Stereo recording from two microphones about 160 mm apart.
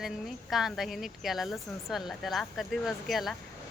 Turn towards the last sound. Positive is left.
turn(degrees=0)  # may be behind; listen again after turning